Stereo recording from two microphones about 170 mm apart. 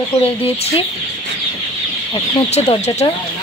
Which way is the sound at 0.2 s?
35° left (ahead or behind).